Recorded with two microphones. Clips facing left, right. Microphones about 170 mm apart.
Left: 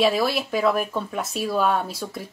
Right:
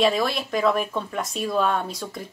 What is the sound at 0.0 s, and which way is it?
Speech, 5° left (ahead or behind).